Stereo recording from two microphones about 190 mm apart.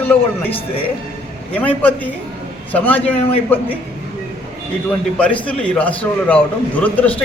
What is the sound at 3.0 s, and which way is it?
Speech, 30° left (ahead or behind).